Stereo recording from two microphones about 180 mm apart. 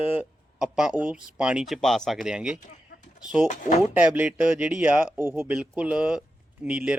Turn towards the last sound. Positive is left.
turn(degrees=-5)  # may be behind; listen again after turning